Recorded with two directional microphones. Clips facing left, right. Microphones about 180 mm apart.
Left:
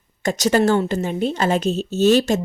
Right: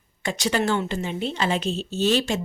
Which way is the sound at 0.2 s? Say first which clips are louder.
Left 7 dB; 40° left (ahead or behind).